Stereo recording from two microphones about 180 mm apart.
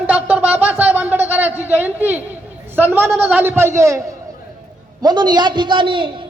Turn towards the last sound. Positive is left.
turn(degrees=-25)  # may be behind; listen again after turning